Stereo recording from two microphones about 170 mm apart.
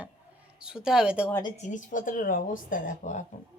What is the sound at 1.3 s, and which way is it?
Speech, 20° left (ahead or behind).